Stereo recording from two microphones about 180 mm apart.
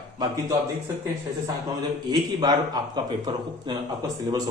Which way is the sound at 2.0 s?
25° right (ahead or behind).